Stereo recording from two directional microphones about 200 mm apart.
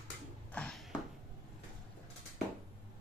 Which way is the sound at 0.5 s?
5° left (ahead or behind).